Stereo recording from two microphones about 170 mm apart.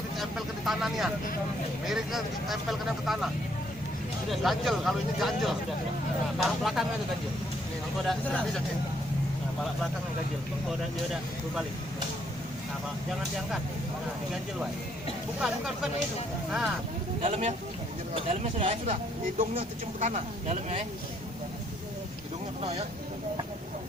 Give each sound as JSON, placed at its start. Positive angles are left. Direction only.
{"t": 0.2, "sound": "vehicle", "side_deg": 0}
{"t": 1.8, "sound": "speech", "side_deg": 0}
{"t": 4.3, "sound": "speech", "side_deg": 0}
{"t": 8.0, "sound": "speech", "side_deg": 5}
{"t": 15.4, "sound": "speech", "side_deg": 0}
{"t": 17.2, "sound": "speech", "side_deg": -35}
{"t": 20.0, "sound": "speech", "side_deg": -45}